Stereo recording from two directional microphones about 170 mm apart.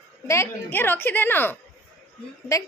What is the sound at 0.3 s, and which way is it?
A woman's voice, 15° left (ahead or behind).